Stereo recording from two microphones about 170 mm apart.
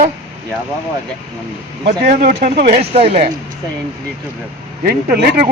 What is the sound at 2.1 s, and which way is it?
A man's voice, 45° right (ahead or behind).